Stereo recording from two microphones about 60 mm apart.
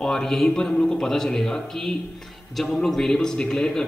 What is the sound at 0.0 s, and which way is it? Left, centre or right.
A man's voice, centre.